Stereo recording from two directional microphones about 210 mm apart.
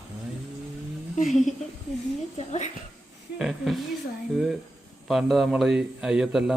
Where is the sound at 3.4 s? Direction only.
Centre (ahead or behind).